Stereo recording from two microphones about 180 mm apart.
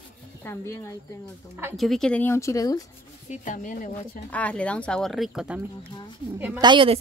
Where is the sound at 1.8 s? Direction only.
Centre (ahead or behind); by 2.8 s 20° left (ahead or behind).